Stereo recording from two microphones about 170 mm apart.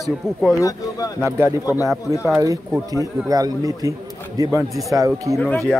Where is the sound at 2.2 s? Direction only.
20° right (ahead or behind).